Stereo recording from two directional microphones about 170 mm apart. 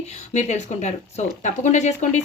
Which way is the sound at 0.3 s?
45° left (ahead or behind).